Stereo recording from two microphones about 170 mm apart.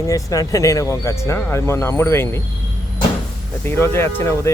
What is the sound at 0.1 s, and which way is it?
Speech, 20° left (ahead or behind).